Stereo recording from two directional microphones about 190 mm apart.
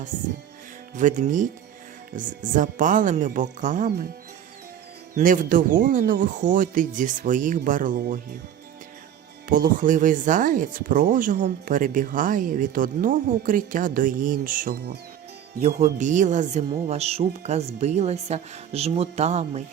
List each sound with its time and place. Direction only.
0.9 s speech: 40° right (ahead or behind)
5.1 s speech: 45° right (ahead or behind)
9.5 s speech: 45° right (ahead or behind)